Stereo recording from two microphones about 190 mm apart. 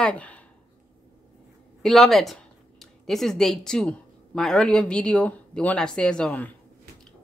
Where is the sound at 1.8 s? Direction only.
Centre (ahead or behind).